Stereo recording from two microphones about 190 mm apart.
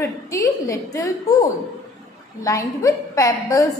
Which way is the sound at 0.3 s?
20° left (ahead or behind).